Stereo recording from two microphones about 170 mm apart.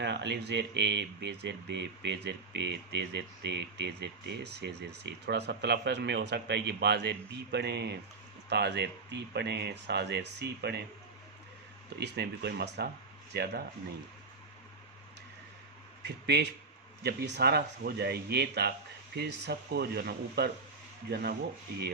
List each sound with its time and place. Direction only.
0.0 s speech: 90° right; by 10.8 s 75° right (ahead or behind)
11.9 s speech: 80° right
16.0 s speech: 80° right